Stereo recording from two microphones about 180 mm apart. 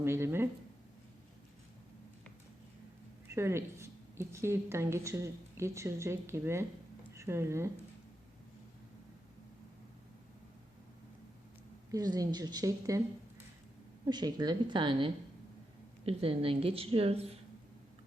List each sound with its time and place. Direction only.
0.0 s speech: 15° right (ahead or behind)
3.3 s a woman's voice: 15° right (ahead or behind)
11.9 s a woman's voice: 20° right (ahead or behind)
14.0 s a woman's voice: 20° right (ahead or behind)